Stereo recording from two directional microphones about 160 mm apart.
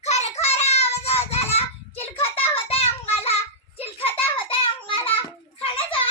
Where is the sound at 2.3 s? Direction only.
35° left (ahead or behind).